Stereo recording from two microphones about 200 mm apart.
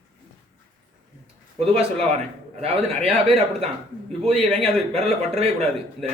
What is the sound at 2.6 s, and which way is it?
A man's voice, 30° right (ahead or behind).